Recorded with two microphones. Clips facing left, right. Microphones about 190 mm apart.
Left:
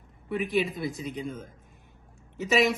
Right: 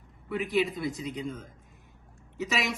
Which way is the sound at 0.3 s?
25° left (ahead or behind).